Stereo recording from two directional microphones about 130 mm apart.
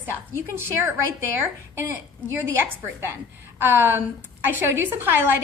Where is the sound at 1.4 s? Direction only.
20° right (ahead or behind).